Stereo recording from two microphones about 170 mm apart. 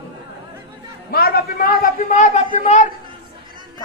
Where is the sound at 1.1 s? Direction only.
65° left (ahead or behind); by 2.9 s 45° left (ahead or behind).